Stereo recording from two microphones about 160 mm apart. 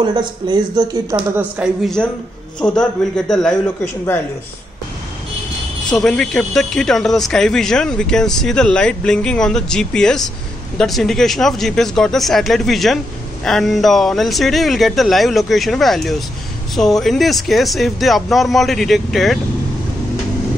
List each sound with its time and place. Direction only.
0.0 s speech: 30° right (ahead or behind)
1.6 s speech: 5° right (ahead or behind)
2.0 s speech: 5° left (ahead or behind)
5.9 s speech: 5° left (ahead or behind)